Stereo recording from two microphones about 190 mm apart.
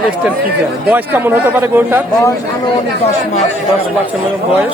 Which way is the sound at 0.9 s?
10° right (ahead or behind).